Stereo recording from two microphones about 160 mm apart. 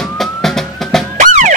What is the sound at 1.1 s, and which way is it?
Music, 50° right (ahead or behind).